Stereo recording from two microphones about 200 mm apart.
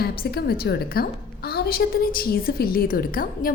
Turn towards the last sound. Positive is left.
turn(degrees=45)  # may be behind; listen again after turning